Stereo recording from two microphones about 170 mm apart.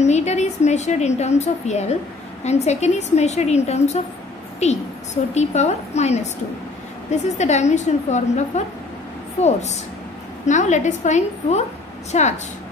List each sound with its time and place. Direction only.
0.0 s a woman's voice: 40° left (ahead or behind)